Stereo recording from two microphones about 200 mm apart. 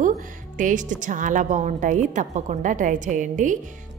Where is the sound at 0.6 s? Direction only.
40° right (ahead or behind).